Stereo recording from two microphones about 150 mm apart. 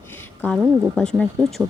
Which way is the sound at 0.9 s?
5° left (ahead or behind).